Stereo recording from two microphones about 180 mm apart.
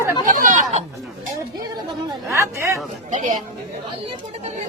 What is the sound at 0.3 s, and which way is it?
Chatter, 45° right (ahead or behind).